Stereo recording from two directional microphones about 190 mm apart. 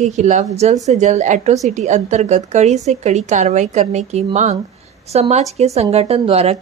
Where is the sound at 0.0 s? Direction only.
40° right (ahead or behind).